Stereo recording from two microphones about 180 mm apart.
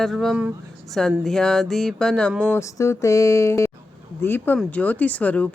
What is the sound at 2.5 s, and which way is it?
Speech, 15° left (ahead or behind).